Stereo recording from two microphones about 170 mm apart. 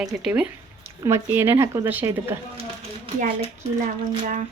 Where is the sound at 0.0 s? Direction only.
5° right (ahead or behind).